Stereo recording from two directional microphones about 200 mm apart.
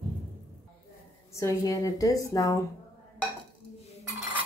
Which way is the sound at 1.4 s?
15° left (ahead or behind).